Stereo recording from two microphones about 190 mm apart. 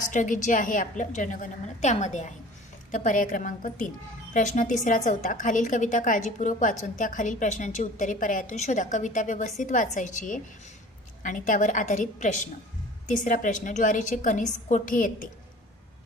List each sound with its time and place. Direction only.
0.1 s a woman's voice: 40° left (ahead or behind)